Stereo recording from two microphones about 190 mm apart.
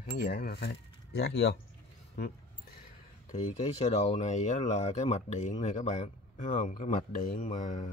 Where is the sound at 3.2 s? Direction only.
35° left (ahead or behind).